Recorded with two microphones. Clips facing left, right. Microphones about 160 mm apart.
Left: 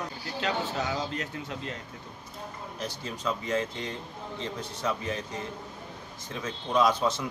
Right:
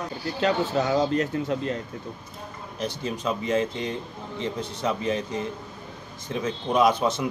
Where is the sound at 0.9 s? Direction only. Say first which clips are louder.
Right 10 dB; 45° right (ahead or behind).